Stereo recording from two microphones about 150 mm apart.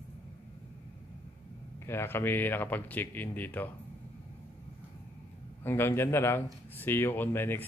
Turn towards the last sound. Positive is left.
turn(degrees=15)  # may be behind; listen again after turning